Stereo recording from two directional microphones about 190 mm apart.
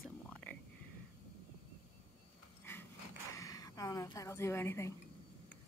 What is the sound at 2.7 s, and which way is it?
Pant, 15° left (ahead or behind).